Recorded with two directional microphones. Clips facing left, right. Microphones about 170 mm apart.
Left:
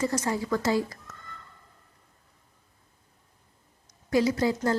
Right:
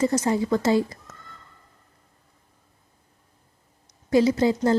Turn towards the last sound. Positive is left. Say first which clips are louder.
# right 5 dB
turn(degrees=-25)  # may be behind; listen again after turning